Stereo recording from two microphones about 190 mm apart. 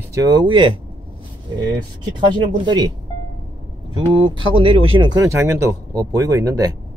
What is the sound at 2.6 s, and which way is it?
Speech, 20° right (ahead or behind).